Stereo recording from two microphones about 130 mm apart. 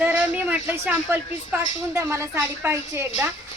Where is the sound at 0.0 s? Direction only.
10° right (ahead or behind).